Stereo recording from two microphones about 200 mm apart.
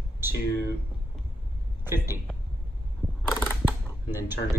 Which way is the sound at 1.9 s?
10° right (ahead or behind).